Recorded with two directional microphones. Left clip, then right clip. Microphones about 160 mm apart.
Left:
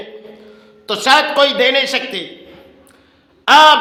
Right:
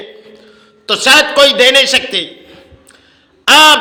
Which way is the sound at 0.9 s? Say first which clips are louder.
Right 4 dB; 10° right (ahead or behind).